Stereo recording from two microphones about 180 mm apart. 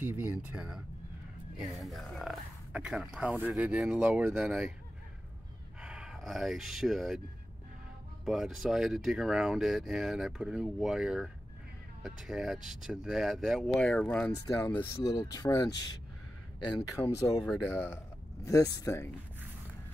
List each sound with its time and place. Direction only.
0.0 s speech: 10° right (ahead or behind)
5.8 s speech: 5° right (ahead or behind)
8.3 s speech: centre (ahead or behind)
15.1 s speech: 20° left (ahead or behind)